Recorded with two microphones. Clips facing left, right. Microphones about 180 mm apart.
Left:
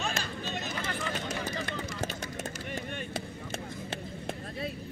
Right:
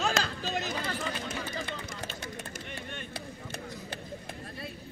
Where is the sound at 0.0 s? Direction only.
80° right.